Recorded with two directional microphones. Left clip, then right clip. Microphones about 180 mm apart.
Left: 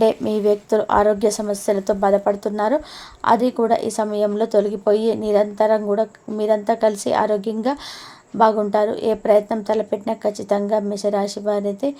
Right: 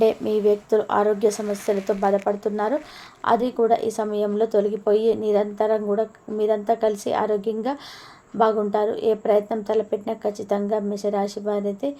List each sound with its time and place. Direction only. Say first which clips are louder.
0.0 s a woman's voice: left 2 dB; 40° left (ahead or behind)